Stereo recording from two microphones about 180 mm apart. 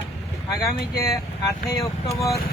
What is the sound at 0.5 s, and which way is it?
Speech, 20° left (ahead or behind).